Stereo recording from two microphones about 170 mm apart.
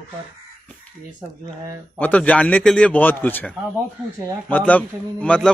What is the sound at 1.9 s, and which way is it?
A man's voice, 10° left (ahead or behind).